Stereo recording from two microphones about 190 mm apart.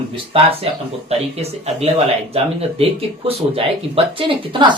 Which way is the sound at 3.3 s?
30° right (ahead or behind).